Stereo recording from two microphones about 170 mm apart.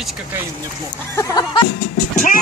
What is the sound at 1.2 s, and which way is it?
Music, 20° left (ahead or behind).